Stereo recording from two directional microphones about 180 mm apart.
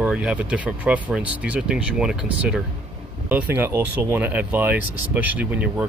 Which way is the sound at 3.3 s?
10° right (ahead or behind).